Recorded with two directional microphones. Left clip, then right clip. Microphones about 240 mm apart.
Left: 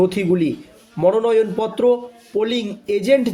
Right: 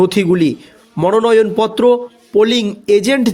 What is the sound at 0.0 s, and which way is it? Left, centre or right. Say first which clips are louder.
Speech: right 5 dB; right.